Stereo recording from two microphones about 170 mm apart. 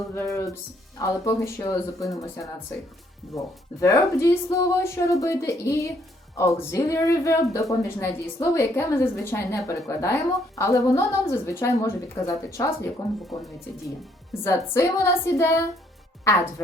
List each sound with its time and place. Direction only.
0.1 s speech: 15° left (ahead or behind)
13.0 s speech: centre (ahead or behind)
14.4 s speech: 15° left (ahead or behind)